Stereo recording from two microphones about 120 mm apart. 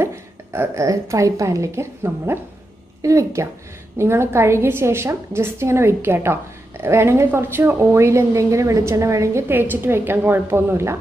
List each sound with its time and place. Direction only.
0.0 s a woman's voice: 20° right (ahead or behind)